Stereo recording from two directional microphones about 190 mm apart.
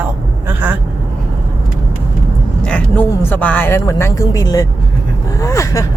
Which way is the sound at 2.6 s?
5° left (ahead or behind).